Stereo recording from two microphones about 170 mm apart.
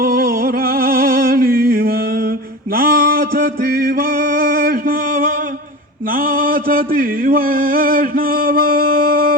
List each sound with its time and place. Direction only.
0.0 s music: 60° right (ahead or behind)
6.1 s mantra: 55° right (ahead or behind)